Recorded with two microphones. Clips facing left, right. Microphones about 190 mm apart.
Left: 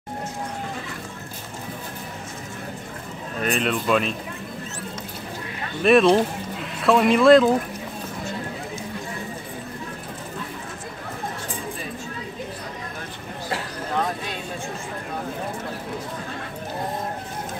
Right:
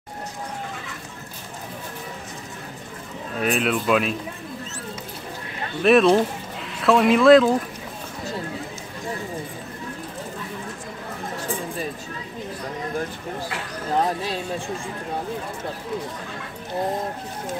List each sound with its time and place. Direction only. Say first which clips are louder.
3.3 s speech: right 1 dB; 5° right (ahead or behind)
5.8 s speech: even; centre (ahead or behind)
13.9 s a sound: right 4 dB; 35° right (ahead or behind)